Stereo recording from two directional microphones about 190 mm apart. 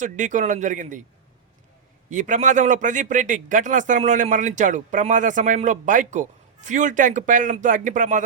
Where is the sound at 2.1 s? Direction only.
40° right (ahead or behind).